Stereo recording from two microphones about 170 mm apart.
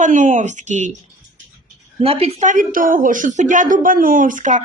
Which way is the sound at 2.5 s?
55° right (ahead or behind).